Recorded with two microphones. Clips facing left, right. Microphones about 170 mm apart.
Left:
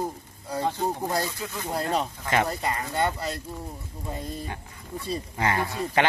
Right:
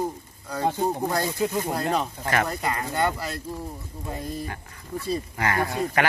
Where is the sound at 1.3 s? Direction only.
20° right (ahead or behind).